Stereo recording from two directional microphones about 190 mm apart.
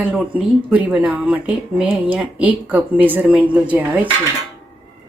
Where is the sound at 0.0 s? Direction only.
5° right (ahead or behind).